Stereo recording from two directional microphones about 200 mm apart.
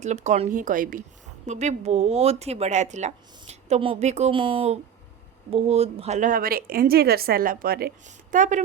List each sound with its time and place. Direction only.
0.0 s a woman's voice: 35° right (ahead or behind); by 7.9 s 50° right (ahead or behind)
8.0 s speech: 40° right (ahead or behind)